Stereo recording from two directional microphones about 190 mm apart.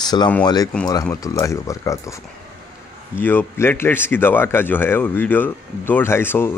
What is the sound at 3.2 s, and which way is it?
Speech, 10° left (ahead or behind).